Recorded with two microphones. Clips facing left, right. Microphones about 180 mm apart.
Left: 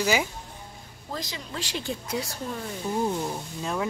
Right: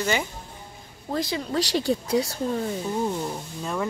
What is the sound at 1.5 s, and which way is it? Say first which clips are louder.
Speech: right 9 dB; 40° right (ahead or behind).